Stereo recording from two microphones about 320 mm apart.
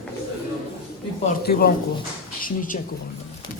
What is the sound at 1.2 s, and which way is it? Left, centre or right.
A woman's voice, left.